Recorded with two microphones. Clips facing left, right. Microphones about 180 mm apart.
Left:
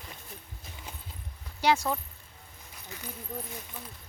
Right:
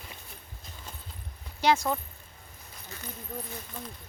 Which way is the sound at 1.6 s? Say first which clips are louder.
Right 1 dB; 10° left (ahead or behind).